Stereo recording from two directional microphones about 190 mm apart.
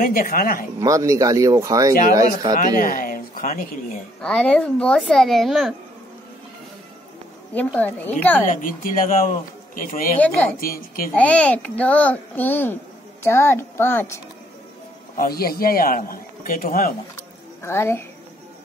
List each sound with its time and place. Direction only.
0.0 s a man's voice: 45° left (ahead or behind)
0.7 s speech: 15° right (ahead or behind)
2.5 s speech: 45° left (ahead or behind)
4.2 s speech: 5° left (ahead or behind)
7.5 s a child's voice: 10° left (ahead or behind)
8.5 s a man's voice: 45° left (ahead or behind)
10.1 s a child's voice: 5° left (ahead or behind)
15.1 s a man's voice: 50° left (ahead or behind)
17.6 s a child's voice: 15° left (ahead or behind)